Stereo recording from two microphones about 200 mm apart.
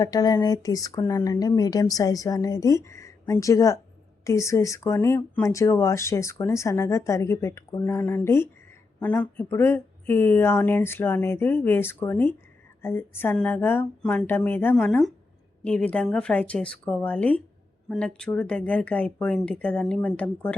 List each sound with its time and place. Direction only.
0.0 s speech: 20° left (ahead or behind)